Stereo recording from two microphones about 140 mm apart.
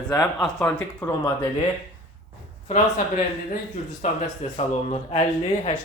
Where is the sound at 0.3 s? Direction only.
5° left (ahead or behind).